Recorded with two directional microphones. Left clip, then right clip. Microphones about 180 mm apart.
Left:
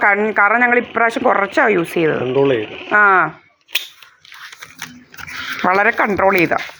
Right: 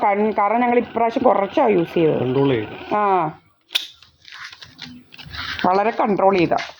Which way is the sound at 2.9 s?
35° left (ahead or behind).